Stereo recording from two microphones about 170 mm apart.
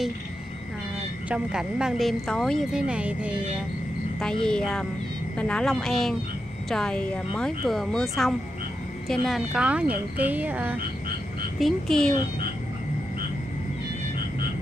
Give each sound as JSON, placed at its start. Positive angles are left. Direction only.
{"t": 1.3, "sound": "speech", "side_deg": -5}
{"t": 4.2, "sound": "speech", "side_deg": 5}
{"t": 11.6, "sound": "speech", "side_deg": 5}